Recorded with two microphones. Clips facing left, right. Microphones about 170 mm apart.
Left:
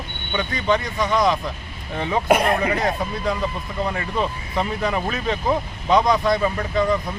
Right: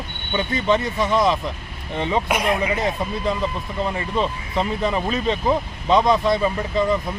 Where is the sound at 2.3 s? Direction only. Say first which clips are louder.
Left 7 dB; 55° left (ahead or behind).